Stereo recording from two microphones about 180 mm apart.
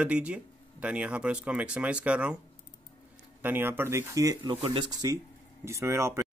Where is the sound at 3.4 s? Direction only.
10° right (ahead or behind).